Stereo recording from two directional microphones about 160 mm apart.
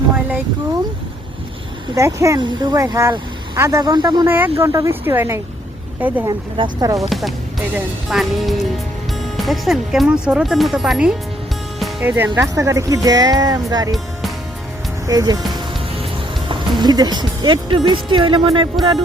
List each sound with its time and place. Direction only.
2.0 s speech: 20° right (ahead or behind)
4.3 s speech: 10° right (ahead or behind)
6.2 s speech: 25° right (ahead or behind)
7.1 s speech: centre (ahead or behind); by 13.9 s 20° right (ahead or behind)
13.9 s music: centre (ahead or behind)
15.0 s speech: 25° right (ahead or behind)
16.5 s speech: 25° right (ahead or behind)